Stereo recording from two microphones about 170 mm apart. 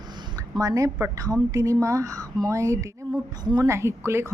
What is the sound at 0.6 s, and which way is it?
A woman's voice, 20° right (ahead or behind).